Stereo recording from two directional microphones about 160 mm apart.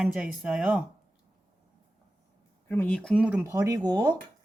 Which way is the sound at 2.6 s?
10° left (ahead or behind).